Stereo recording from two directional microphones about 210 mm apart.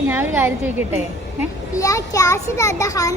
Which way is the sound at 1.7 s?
15° left (ahead or behind).